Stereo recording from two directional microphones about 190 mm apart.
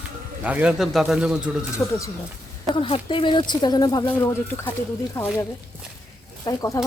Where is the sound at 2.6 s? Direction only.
25° left (ahead or behind).